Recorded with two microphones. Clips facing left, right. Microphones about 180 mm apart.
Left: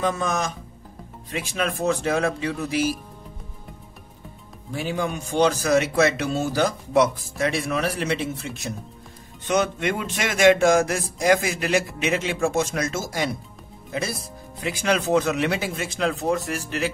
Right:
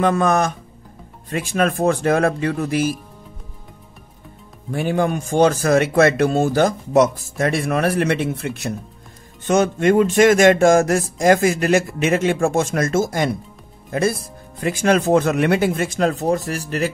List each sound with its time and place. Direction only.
0.0 s a man's voice: 60° right (ahead or behind)
4.6 s a man's voice: 55° right (ahead or behind)
9.4 s a man's voice: 45° right (ahead or behind)